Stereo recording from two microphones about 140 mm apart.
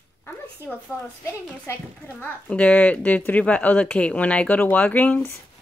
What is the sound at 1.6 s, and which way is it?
A woman's voice, 15° left (ahead or behind).